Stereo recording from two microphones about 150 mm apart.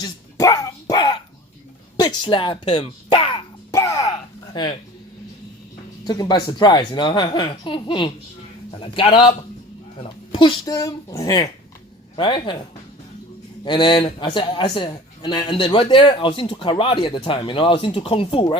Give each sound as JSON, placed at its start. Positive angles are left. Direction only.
{"t": 0.0, "sound": "dog", "side_deg": 25}
{"t": 2.0, "sound": "speech", "side_deg": 30}
{"t": 3.7, "sound": "throat clearing", "side_deg": 20}
{"t": 4.6, "sound": "a man's voice", "side_deg": 30}
{"t": 6.1, "sound": "a man's voice", "side_deg": 25}
{"t": 10.3, "sound": "speech", "side_deg": 35}
{"t": 12.1, "sound": "a man's voice", "side_deg": 30}
{"t": 13.7, "sound": "a man's voice", "side_deg": 30}